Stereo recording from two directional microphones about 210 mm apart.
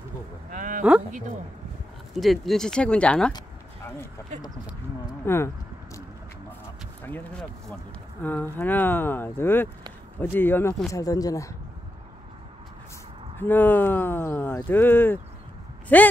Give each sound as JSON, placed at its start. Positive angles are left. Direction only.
{"t": 0.5, "sound": "a sound", "side_deg": -40}
{"t": 2.1, "sound": "speech", "side_deg": 0}
{"t": 3.3, "sound": "a sound", "side_deg": 10}
{"t": 5.2, "sound": "speech", "side_deg": 10}
{"t": 7.1, "sound": "speech", "side_deg": 10}
{"t": 13.4, "sound": "speech", "side_deg": 10}